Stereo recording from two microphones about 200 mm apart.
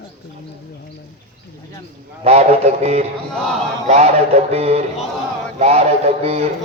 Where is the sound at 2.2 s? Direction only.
30° right (ahead or behind).